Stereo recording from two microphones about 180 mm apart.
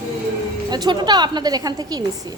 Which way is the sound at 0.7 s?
25° right (ahead or behind).